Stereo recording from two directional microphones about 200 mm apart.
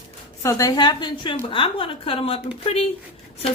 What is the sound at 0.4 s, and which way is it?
Speech, 20° left (ahead or behind).